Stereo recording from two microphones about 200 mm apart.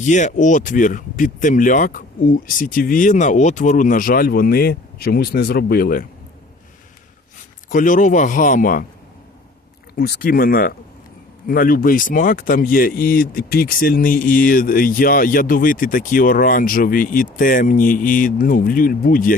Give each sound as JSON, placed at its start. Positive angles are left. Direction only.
{"t": 0.0, "sound": "speech", "side_deg": 40}
{"t": 7.7, "sound": "speech", "side_deg": 40}
{"t": 10.0, "sound": "speech", "side_deg": 45}